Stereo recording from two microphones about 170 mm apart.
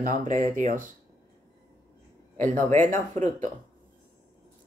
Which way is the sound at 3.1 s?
45° right (ahead or behind).